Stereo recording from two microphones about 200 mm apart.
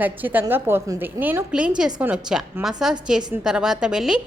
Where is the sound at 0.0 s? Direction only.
10° right (ahead or behind).